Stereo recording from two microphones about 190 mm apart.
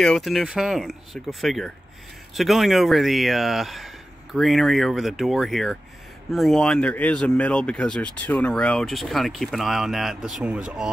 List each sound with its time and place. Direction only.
0.0 s speech: centre (ahead or behind)